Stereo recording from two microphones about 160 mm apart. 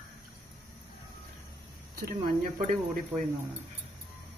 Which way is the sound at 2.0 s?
55° right (ahead or behind).